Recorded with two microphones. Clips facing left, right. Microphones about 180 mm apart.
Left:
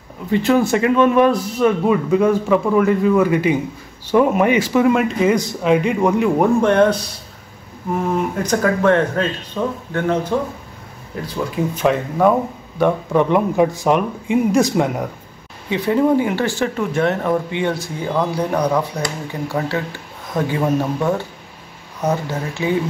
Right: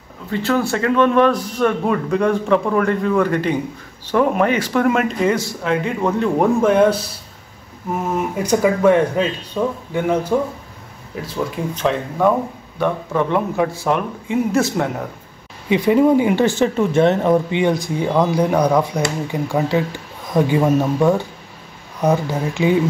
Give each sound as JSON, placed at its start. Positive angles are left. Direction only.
{"t": 0.3, "sound": "speech", "side_deg": 15}
{"t": 5.3, "sound": "speech", "side_deg": 20}
{"t": 6.4, "sound": "speech", "side_deg": -5}
{"t": 8.4, "sound": "speech", "side_deg": -10}
{"t": 11.1, "sound": "speech", "side_deg": 0}
{"t": 15.7, "sound": "speech", "side_deg": -15}